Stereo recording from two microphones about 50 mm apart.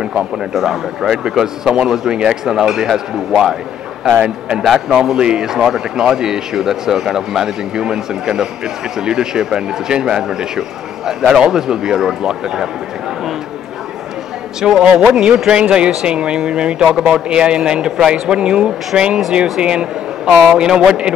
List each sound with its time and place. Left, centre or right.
0.0 s a man's voice: centre
4.1 s a man's voice: right
4.6 s a man's voice: centre
14.6 s a man's voice: centre